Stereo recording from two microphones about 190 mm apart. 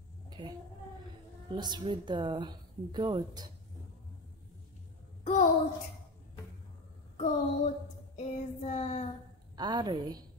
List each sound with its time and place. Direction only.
1.5 s a woman's voice: 25° right (ahead or behind)
5.2 s a sound: 35° left (ahead or behind)
7.2 s child singing: 35° left (ahead or behind)
9.6 s a woman's voice: 25° right (ahead or behind)